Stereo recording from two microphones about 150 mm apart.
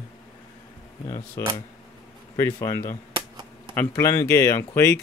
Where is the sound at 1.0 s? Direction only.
30° left (ahead or behind).